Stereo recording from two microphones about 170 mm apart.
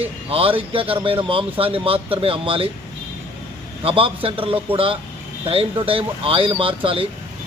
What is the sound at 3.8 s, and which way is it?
A man's voice, 35° right (ahead or behind).